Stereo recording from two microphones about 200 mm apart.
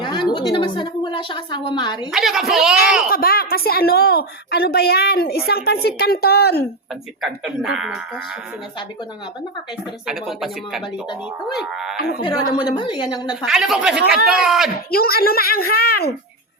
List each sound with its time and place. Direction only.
0.5 s a woman's voice: 25° left (ahead or behind)
2.1 s speech: centre (ahead or behind)
3.1 s a woman's voice: 50° left (ahead or behind)
7.2 s speech: centre (ahead or behind)
10.1 s speech: centre (ahead or behind)
11.9 s a woman's voice: 50° left (ahead or behind)
12.2 s a woman's voice: 20° left (ahead or behind)
13.4 s speech: centre (ahead or behind)
14.8 s a woman's voice: 50° left (ahead or behind)